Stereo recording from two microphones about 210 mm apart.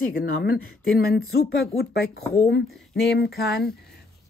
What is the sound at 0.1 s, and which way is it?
Speech, 50° left (ahead or behind).